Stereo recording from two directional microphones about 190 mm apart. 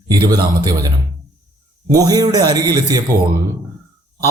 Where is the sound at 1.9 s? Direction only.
20° right (ahead or behind).